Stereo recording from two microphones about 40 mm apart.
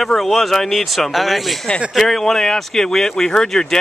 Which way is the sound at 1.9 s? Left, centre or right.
Centre.